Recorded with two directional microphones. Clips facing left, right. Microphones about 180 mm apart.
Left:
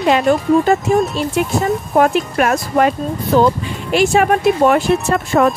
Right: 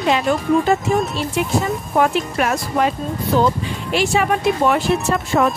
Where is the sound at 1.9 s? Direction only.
55° left (ahead or behind).